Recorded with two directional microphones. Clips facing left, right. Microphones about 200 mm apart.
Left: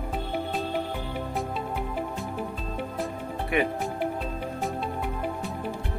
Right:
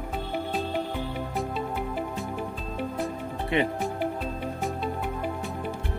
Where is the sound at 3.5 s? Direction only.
25° right (ahead or behind).